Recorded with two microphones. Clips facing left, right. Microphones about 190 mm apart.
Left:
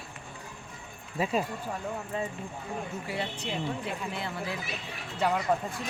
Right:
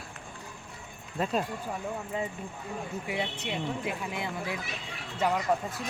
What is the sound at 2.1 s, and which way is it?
Speech, 15° right (ahead or behind).